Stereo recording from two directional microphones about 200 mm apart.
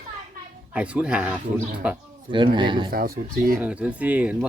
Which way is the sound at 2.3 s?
25° right (ahead or behind).